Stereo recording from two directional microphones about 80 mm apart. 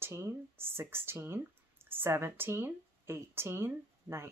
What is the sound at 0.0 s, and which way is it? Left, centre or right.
Speech, right.